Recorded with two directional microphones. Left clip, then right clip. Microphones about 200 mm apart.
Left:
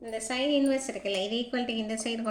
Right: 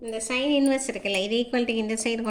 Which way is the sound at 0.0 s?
35° right (ahead or behind).